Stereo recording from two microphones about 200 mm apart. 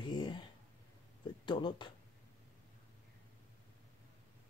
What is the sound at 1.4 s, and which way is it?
Speech, 25° left (ahead or behind).